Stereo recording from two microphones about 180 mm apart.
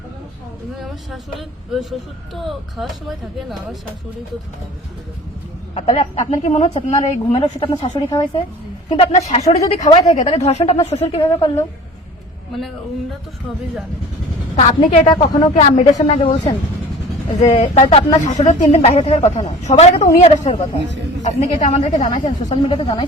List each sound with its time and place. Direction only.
0.8 s speech: centre (ahead or behind)
5.7 s a woman's voice: 35° left (ahead or behind)
14.5 s a woman's voice: 35° left (ahead or behind)
15.1 s speech: 20° left (ahead or behind)
15.5 s a woman's voice: 40° left (ahead or behind)
17.4 s a woman's voice: 35° left (ahead or behind)
22.1 s speech: 25° left (ahead or behind)